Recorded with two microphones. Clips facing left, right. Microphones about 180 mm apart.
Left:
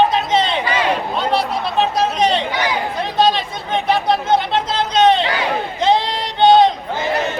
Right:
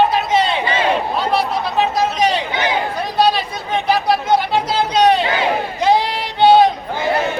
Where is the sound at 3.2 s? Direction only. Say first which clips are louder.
Even; 5° right (ahead or behind).